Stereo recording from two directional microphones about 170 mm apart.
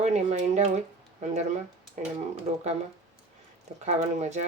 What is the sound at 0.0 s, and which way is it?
Speech, 45° right (ahead or behind).